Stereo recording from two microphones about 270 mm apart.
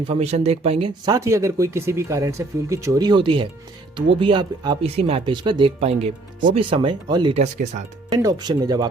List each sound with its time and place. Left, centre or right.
0.1 s speech: right
8.1 s speech: centre